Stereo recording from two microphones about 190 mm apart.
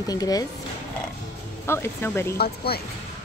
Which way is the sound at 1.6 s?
15° left (ahead or behind).